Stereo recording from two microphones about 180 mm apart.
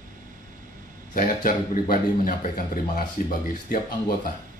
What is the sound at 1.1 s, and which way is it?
A man's voice, 50° left (ahead or behind).